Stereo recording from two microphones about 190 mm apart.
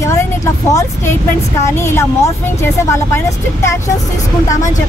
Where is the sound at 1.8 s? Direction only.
15° left (ahead or behind).